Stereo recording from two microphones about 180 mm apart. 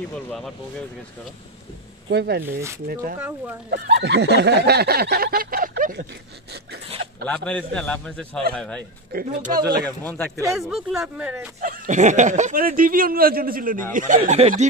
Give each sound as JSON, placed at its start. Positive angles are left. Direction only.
{"t": 0.1, "sound": "a man's voice", "side_deg": 5}
{"t": 2.0, "sound": "a sound", "side_deg": -65}
{"t": 3.2, "sound": "speech", "side_deg": -10}
{"t": 3.7, "sound": "a sound", "side_deg": -65}
{"t": 7.2, "sound": "a man's voice", "side_deg": 5}
{"t": 9.1, "sound": "a sound", "side_deg": -60}
{"t": 9.5, "sound": "speech", "side_deg": -20}
{"t": 9.8, "sound": "speech", "side_deg": 10}
{"t": 10.5, "sound": "a man's voice", "side_deg": 0}
{"t": 11.6, "sound": "speech", "side_deg": -50}